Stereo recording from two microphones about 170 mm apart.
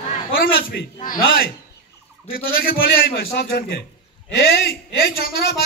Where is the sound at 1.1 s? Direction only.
60° left (ahead or behind).